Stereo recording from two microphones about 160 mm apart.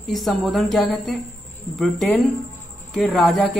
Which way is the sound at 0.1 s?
Centre (ahead or behind).